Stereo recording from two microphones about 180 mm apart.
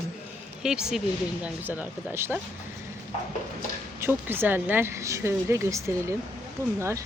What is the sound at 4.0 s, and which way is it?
Speech, 10° right (ahead or behind).